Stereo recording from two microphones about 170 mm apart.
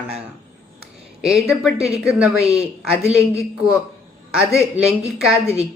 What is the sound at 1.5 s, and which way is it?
A man's voice, centre (ahead or behind).